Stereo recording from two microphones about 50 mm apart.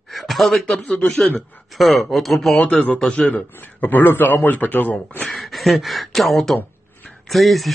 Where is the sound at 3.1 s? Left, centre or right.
Left.